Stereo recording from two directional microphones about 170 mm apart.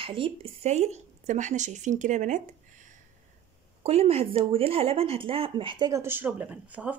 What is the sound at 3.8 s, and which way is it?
Speech, 35° right (ahead or behind).